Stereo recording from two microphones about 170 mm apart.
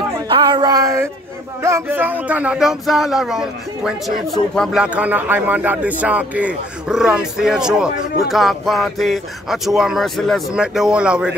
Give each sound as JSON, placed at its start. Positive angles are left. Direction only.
{"t": 0.3, "sound": "speech", "side_deg": -25}